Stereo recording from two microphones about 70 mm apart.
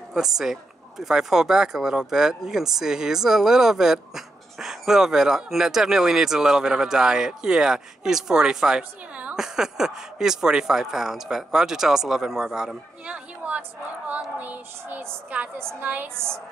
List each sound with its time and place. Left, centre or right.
0.1 s speech: centre
13.0 s a woman's voice: centre